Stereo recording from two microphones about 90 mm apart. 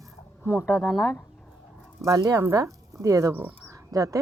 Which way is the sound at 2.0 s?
40° right (ahead or behind).